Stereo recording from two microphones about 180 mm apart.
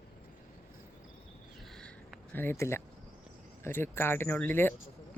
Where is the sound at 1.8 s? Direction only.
10° left (ahead or behind).